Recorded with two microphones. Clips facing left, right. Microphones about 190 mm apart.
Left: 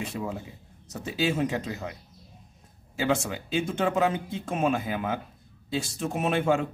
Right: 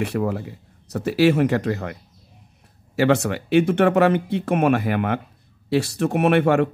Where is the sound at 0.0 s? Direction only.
65° right (ahead or behind).